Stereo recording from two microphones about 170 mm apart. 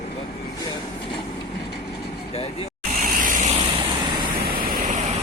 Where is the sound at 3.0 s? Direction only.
50° right (ahead or behind).